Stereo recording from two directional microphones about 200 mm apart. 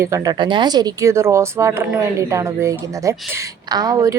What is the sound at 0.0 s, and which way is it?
Speech, 15° right (ahead or behind).